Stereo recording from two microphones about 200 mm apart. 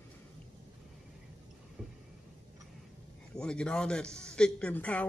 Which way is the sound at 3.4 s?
5° left (ahead or behind).